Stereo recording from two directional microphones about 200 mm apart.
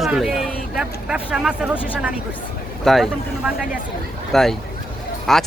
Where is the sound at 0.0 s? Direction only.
Centre (ahead or behind).